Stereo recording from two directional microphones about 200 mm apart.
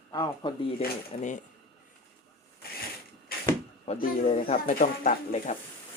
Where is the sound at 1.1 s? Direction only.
35° left (ahead or behind).